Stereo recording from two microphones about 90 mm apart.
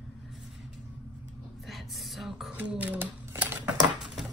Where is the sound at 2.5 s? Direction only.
15° right (ahead or behind).